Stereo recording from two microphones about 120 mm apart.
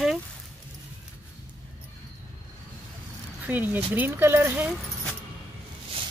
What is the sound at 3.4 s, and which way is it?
Speech, 15° right (ahead or behind).